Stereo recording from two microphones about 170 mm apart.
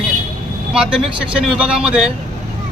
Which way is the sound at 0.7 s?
5° right (ahead or behind).